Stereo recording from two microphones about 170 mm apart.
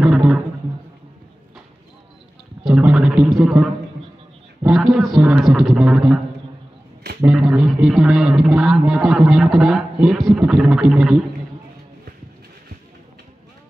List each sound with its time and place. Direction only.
0.0 s music: 5° right (ahead or behind)
2.6 s a man's voice: 5° right (ahead or behind)
7.2 s a man's voice: 5° right (ahead or behind)